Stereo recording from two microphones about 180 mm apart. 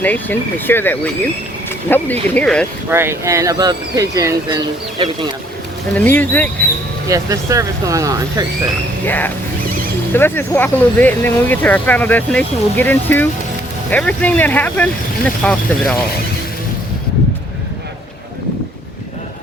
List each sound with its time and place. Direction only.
0.0 s speech: 10° left (ahead or behind)
2.9 s speech: 15° right (ahead or behind)
5.9 s speech: 10° left (ahead or behind)
7.1 s speech: 20° right (ahead or behind)
9.0 s speech: 10° left (ahead or behind)